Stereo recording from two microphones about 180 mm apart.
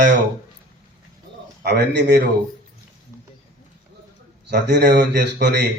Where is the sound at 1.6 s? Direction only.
65° right (ahead or behind).